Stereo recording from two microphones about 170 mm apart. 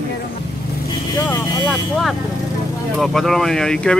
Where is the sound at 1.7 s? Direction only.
Centre (ahead or behind).